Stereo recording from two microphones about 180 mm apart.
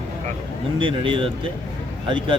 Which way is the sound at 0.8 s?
30° right (ahead or behind).